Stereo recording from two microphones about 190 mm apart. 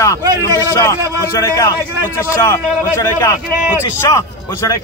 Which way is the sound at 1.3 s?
15° left (ahead or behind).